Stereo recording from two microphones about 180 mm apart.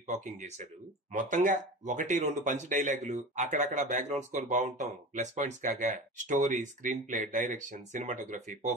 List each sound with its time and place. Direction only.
0.0 s speech: 40° right (ahead or behind)